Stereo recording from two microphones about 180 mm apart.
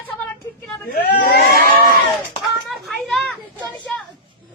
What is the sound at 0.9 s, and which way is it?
Crowd, 55° left (ahead or behind).